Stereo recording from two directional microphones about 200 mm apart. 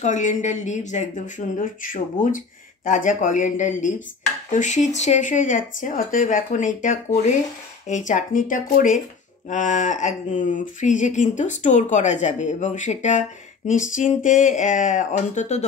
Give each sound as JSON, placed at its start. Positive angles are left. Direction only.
{"t": 0.0, "sound": "speech", "side_deg": 35}